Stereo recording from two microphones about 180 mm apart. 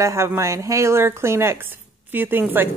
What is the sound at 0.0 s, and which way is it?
Speech, 15° right (ahead or behind).